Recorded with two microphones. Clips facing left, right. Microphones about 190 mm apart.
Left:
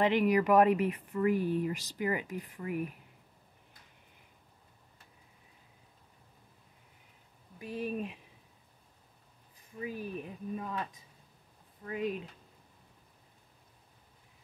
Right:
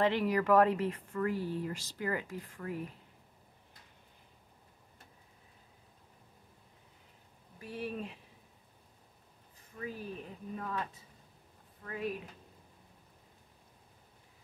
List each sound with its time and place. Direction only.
0.0 s speech: 15° left (ahead or behind)
7.5 s speech: 15° left (ahead or behind)
9.8 s speech: 15° left (ahead or behind)